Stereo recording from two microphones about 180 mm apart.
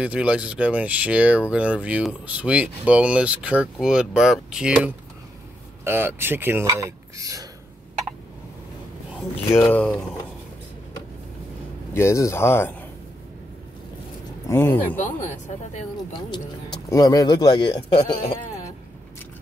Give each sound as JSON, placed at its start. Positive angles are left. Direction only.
{"t": 0.0, "sound": "speech", "side_deg": -5}
{"t": 9.5, "sound": "speech", "side_deg": 10}
{"t": 11.9, "sound": "speech", "side_deg": 15}
{"t": 14.5, "sound": "speech", "side_deg": 10}
{"t": 15.0, "sound": "speech", "side_deg": 45}
{"t": 16.3, "sound": "speech", "side_deg": 20}